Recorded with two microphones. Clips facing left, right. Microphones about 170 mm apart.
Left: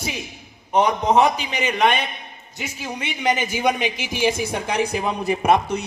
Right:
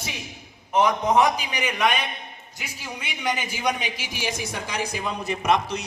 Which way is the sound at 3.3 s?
55° left (ahead or behind).